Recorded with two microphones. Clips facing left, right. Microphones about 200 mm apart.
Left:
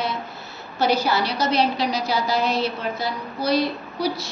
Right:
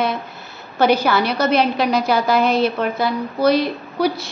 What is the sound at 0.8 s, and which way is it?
A woman's voice, 55° right (ahead or behind).